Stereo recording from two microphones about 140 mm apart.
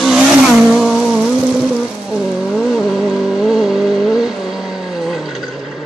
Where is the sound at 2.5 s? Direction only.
Centre (ahead or behind).